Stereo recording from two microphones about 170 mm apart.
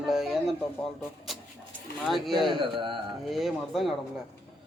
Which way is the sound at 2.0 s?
Centre (ahead or behind).